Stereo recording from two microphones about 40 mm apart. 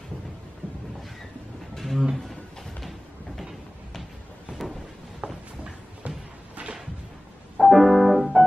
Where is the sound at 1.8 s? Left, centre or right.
Centre.